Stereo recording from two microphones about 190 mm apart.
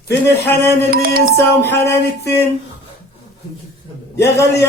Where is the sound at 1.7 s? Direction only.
15° left (ahead or behind).